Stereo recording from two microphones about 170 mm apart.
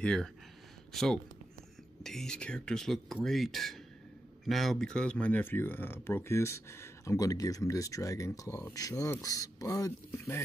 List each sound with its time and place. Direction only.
0.0 s speech: 5° left (ahead or behind)